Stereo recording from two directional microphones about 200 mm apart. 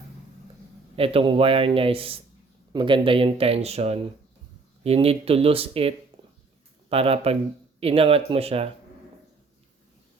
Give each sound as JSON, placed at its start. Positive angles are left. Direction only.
{"t": 0.9, "sound": "a man's voice", "side_deg": -30}
{"t": 6.9, "sound": "a man's voice", "side_deg": -30}